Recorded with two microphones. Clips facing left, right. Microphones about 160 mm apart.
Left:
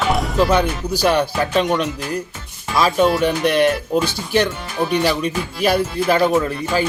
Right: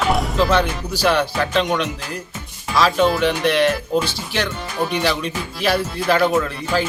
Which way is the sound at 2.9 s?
Centre (ahead or behind).